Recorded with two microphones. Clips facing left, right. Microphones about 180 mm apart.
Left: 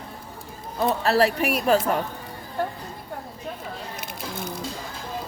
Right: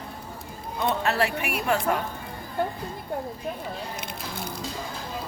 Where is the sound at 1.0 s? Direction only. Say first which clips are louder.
Left 5 dB; 35° left (ahead or behind).